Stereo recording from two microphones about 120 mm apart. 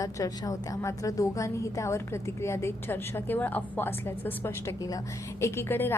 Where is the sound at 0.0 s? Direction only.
30° left (ahead or behind).